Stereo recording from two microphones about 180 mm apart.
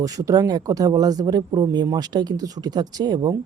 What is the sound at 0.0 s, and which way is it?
Speech, 20° right (ahead or behind).